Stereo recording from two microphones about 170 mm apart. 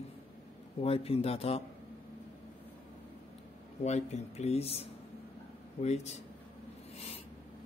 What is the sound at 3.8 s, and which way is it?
Speech, 40° left (ahead or behind).